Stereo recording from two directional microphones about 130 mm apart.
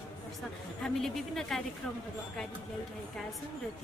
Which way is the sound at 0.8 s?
5° left (ahead or behind).